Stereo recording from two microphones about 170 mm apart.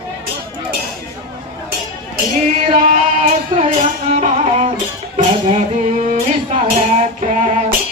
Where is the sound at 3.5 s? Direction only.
25° right (ahead or behind).